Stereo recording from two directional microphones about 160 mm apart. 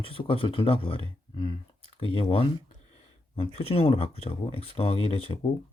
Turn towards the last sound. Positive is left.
turn(degrees=35)  # may be behind; listen again after turning